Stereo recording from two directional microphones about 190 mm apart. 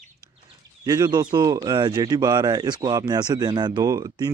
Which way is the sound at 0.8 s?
20° right (ahead or behind).